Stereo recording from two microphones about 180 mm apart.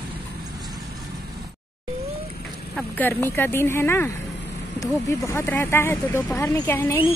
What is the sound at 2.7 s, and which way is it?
Speech, 10° left (ahead or behind).